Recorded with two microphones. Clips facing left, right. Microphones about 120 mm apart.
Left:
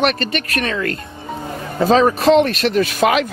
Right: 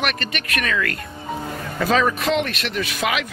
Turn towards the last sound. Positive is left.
turn(degrees=40)  # may be behind; listen again after turning